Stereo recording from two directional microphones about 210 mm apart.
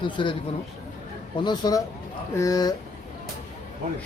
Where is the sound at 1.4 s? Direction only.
20° left (ahead or behind).